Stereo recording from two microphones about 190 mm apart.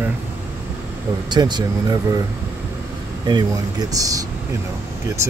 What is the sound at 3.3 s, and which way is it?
Speech, 20° right (ahead or behind).